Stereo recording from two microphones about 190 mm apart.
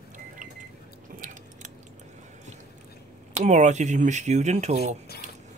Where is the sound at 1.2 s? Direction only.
40° right (ahead or behind).